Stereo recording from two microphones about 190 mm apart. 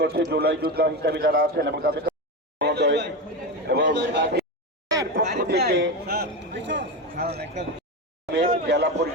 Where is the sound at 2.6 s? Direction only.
60° right (ahead or behind).